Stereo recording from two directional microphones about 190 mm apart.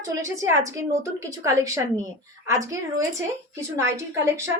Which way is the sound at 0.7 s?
15° right (ahead or behind).